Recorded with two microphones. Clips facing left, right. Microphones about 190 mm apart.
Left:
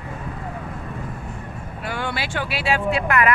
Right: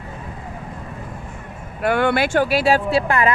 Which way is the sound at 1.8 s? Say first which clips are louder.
Right 10 dB; 60° right (ahead or behind).